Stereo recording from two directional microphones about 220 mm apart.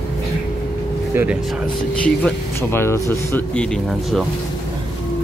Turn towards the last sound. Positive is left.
turn(degrees=0)  # may be behind; listen again after turning